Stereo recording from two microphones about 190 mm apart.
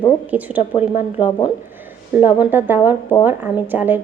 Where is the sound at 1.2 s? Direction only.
25° left (ahead or behind).